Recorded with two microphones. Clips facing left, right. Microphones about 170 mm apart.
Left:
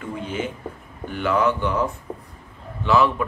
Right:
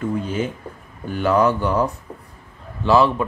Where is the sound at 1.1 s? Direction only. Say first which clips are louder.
Right 3 dB; 40° right (ahead or behind).